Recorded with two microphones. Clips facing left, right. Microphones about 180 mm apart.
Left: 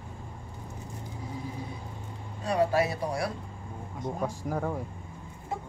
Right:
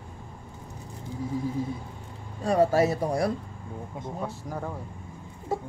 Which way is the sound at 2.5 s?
45° right (ahead or behind).